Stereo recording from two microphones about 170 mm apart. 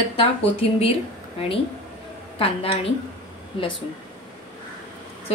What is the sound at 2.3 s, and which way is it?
Speech, 35° left (ahead or behind).